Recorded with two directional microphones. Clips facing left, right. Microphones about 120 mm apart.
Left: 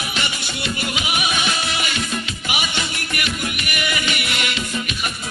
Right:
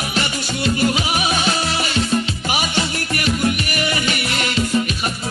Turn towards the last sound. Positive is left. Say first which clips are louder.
# right 4 dB
turn(degrees=-35)  # may be behind; listen again after turning